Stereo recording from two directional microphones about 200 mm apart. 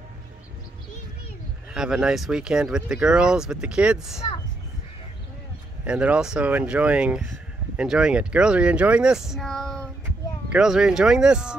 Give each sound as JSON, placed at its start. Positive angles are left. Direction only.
{"t": 1.7, "sound": "speech", "side_deg": -5}
{"t": 5.9, "sound": "speech", "side_deg": -5}